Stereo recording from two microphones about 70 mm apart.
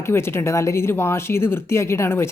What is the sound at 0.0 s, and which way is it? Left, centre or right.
Speech, left.